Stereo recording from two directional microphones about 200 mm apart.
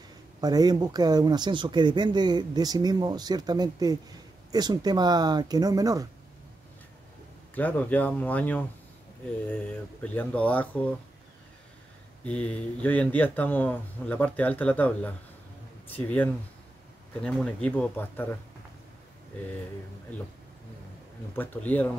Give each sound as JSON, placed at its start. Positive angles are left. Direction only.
{"t": 0.4, "sound": "speech", "side_deg": -20}
{"t": 7.5, "sound": "speech", "side_deg": 10}
{"t": 10.0, "sound": "speech", "side_deg": 5}
{"t": 12.3, "sound": "speech", "side_deg": 5}
{"t": 21.4, "sound": "speech", "side_deg": 10}